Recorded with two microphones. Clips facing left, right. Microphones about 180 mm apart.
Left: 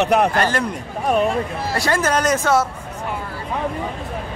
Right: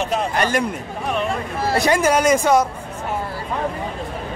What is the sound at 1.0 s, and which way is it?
Speech, 45° left (ahead or behind).